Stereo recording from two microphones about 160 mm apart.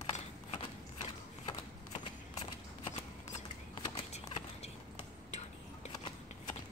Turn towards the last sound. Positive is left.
turn(degrees=45)  # may be behind; listen again after turning